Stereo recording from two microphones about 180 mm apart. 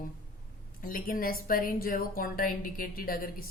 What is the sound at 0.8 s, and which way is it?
Speech, 50° left (ahead or behind).